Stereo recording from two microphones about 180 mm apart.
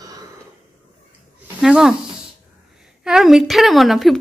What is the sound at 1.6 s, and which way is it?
Speech, 5° right (ahead or behind).